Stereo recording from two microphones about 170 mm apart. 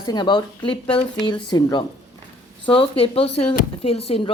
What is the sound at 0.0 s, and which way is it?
Speech, 25° left (ahead or behind).